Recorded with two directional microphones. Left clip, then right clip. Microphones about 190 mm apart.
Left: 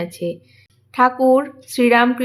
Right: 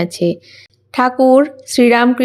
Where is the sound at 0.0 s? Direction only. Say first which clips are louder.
Right 8 dB; 40° right (ahead or behind).